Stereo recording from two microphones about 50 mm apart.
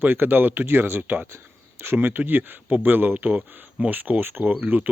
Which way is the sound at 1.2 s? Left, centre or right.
Right.